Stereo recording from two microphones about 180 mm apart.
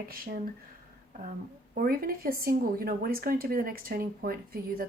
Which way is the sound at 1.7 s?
55° right (ahead or behind).